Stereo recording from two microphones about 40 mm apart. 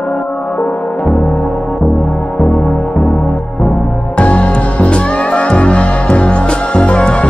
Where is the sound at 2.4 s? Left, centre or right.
Left.